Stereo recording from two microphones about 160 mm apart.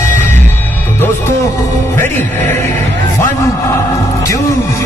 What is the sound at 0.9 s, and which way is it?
Music, 15° left (ahead or behind).